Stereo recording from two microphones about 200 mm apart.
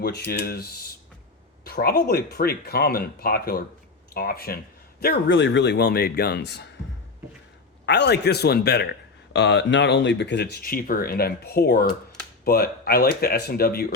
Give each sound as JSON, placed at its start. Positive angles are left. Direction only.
{"t": 0.0, "sound": "speech", "side_deg": 55}
{"t": 7.9, "sound": "speech", "side_deg": 55}